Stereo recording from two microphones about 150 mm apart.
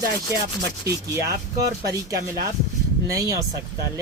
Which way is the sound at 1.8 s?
25° right (ahead or behind).